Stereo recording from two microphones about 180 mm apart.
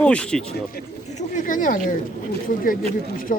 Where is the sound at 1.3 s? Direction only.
45° left (ahead or behind).